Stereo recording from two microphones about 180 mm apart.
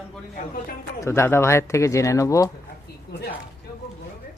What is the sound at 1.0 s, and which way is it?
Speech, 15° left (ahead or behind).